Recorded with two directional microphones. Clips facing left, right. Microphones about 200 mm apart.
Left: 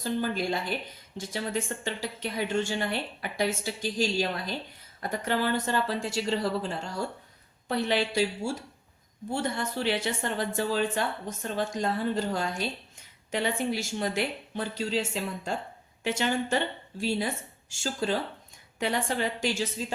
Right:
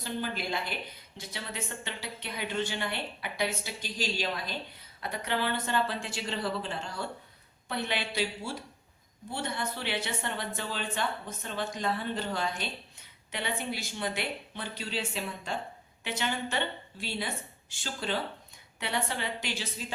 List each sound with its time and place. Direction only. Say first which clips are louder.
0.0 s speech: left 6 dB; 40° left (ahead or behind)